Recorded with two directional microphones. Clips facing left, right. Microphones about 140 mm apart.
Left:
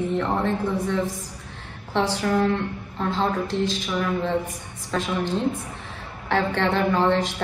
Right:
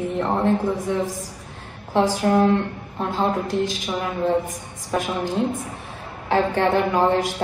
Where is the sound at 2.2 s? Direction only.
25° right (ahead or behind).